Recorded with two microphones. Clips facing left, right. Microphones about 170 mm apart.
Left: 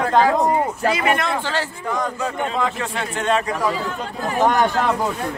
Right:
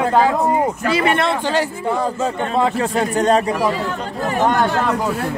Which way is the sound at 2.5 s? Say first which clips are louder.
Right 6 dB; 35° right (ahead or behind).